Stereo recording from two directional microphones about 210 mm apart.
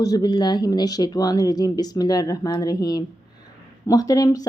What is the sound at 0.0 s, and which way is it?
A woman's voice, 20° left (ahead or behind).